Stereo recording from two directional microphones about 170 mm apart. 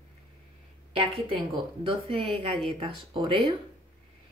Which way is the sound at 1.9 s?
30° right (ahead or behind).